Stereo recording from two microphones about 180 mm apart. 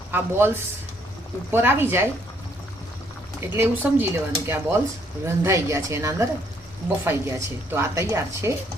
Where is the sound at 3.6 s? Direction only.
10° right (ahead or behind).